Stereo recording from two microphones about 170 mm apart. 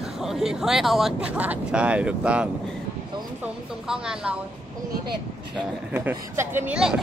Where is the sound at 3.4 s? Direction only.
5° right (ahead or behind).